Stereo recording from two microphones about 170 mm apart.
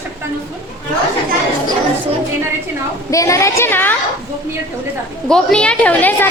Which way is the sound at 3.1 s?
20° left (ahead or behind).